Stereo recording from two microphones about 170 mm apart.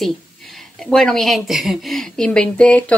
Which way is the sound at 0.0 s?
Centre (ahead or behind).